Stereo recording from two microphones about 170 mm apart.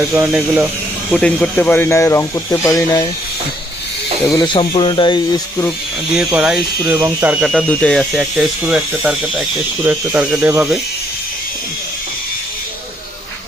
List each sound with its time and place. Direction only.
0.2 s speech: 10° right (ahead or behind)
1.1 s speech: 5° left (ahead or behind)
4.3 s speech: 25° left (ahead or behind)
6.1 s speech: 5° right (ahead or behind)
7.4 s speech: 5° left (ahead or behind); by 10.8 s 10° right (ahead or behind)